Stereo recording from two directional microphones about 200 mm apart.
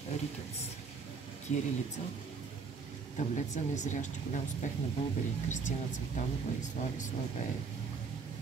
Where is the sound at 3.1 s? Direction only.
35° left (ahead or behind).